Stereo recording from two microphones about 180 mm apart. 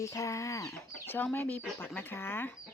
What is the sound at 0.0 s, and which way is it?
Speech, 15° left (ahead or behind).